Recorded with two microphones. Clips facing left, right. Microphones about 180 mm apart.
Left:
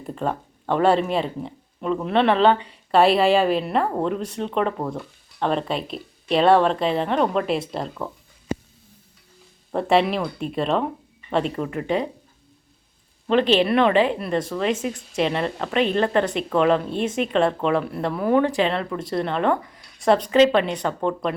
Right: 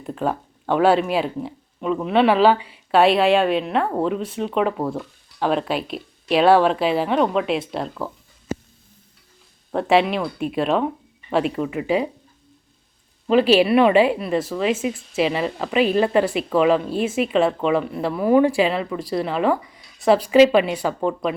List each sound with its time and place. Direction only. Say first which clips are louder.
0.0 s speech: right 2 dB; centre (ahead or behind)
9.7 s speech: right 1 dB; centre (ahead or behind)
13.2 s speech: right 3 dB; 5° right (ahead or behind)